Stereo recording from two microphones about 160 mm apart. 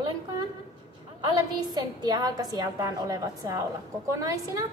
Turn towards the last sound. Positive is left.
turn(degrees=-20)  # may be behind; listen again after turning